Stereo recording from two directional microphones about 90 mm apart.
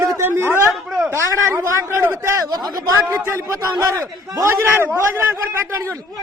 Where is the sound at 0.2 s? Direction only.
25° right (ahead or behind).